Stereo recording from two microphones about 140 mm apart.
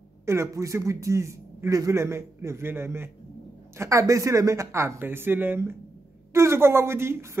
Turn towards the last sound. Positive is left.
turn(degrees=-15)  # may be behind; listen again after turning